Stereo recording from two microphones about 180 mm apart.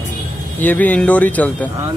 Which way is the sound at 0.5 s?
10° left (ahead or behind).